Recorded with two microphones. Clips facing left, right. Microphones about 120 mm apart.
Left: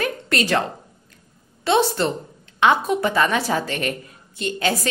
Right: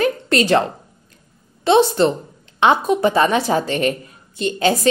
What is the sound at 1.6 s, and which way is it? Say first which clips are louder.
A woman's voice: right 5 dB; 25° right (ahead or behind).